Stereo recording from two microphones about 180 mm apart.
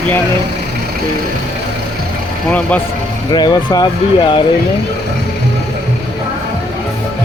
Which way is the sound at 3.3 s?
25° left (ahead or behind).